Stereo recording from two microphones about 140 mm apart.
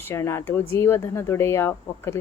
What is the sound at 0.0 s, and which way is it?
Speech, 20° left (ahead or behind).